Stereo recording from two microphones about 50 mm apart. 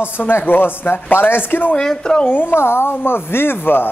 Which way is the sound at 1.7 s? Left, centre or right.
Centre.